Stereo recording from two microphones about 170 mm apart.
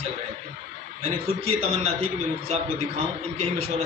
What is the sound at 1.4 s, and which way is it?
Speech, 40° right (ahead or behind).